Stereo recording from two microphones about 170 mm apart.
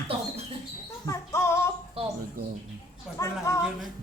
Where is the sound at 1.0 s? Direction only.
15° left (ahead or behind).